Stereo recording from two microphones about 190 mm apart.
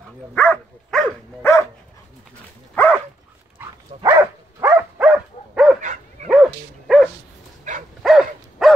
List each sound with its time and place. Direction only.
0.3 s dog: 5° left (ahead or behind)
1.4 s dog: 15° left (ahead or behind)
3.5 s dog: 15° right (ahead or behind)